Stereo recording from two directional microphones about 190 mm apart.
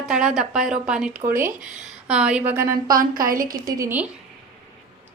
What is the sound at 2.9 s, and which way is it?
Speech, 45° right (ahead or behind).